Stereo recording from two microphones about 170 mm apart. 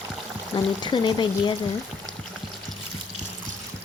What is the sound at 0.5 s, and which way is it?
Speech, 30° left (ahead or behind).